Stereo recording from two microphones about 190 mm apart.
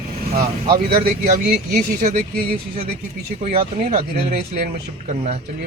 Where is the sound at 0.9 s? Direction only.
55° right (ahead or behind).